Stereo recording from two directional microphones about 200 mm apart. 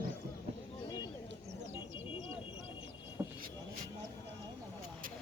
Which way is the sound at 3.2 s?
10° right (ahead or behind).